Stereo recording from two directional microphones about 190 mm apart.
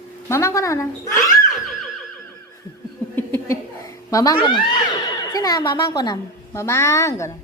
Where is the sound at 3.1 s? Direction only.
15° left (ahead or behind).